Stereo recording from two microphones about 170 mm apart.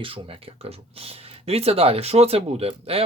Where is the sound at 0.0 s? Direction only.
30° right (ahead or behind).